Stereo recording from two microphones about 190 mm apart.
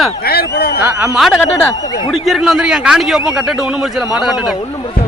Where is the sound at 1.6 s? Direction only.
20° left (ahead or behind).